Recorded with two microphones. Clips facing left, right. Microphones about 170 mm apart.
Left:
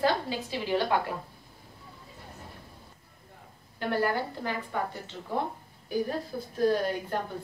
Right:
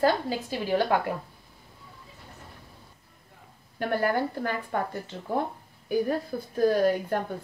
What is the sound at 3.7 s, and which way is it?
Speech, 50° right (ahead or behind).